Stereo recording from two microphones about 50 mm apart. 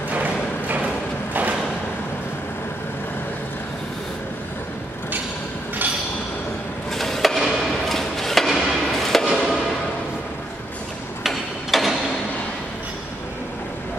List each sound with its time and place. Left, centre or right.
0.1 s music: right
6.9 s a sound: centre
11.2 s mechanisms: centre